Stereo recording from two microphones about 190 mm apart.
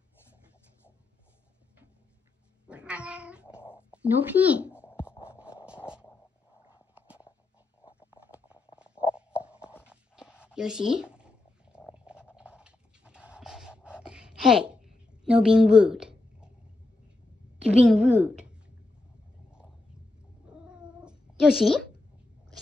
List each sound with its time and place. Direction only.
2.7 s cat: 5° right (ahead or behind)
3.7 s speech: 5° right (ahead or behind)
8.1 s a sound: 10° right (ahead or behind)
17.6 s a woman's voice: 5° right (ahead or behind)
20.6 s cat: 5° right (ahead or behind)